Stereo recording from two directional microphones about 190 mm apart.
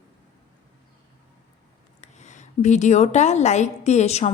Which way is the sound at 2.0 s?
40° left (ahead or behind).